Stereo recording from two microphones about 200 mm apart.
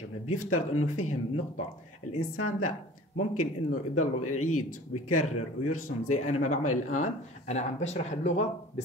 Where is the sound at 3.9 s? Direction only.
90° left.